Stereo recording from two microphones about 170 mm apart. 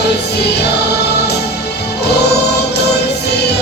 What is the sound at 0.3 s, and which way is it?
Music, 75° left (ahead or behind).